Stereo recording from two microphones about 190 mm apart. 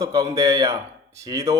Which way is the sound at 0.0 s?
15° right (ahead or behind).